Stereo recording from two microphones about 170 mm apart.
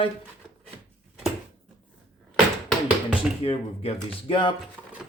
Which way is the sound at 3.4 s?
35° left (ahead or behind).